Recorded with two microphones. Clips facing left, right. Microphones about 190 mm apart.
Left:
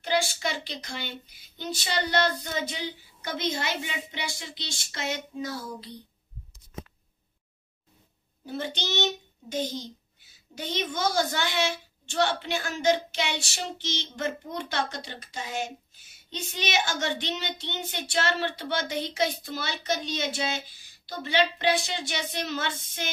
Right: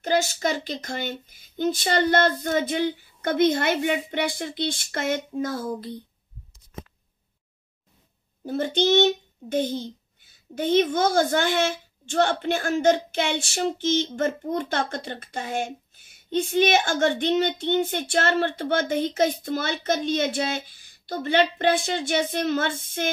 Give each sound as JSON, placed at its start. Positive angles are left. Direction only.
{"t": 0.0, "sound": "a child's voice", "side_deg": -45}
{"t": 8.5, "sound": "a child's voice", "side_deg": -50}